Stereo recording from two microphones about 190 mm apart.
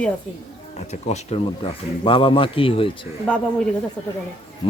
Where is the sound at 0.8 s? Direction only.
35° left (ahead or behind).